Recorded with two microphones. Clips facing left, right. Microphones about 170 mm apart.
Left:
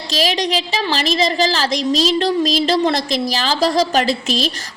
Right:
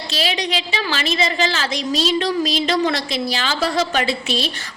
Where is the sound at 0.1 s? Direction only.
40° left (ahead or behind).